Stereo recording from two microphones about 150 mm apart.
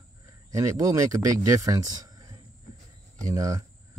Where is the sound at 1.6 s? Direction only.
25° right (ahead or behind).